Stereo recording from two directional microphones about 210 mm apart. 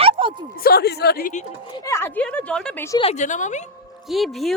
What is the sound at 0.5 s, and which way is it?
Speech, 45° left (ahead or behind).